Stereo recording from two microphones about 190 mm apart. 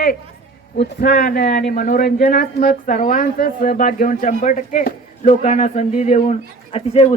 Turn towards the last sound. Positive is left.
turn(degrees=30)  # may be behind; listen again after turning